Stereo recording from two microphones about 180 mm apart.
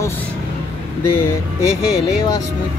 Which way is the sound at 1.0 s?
15° left (ahead or behind).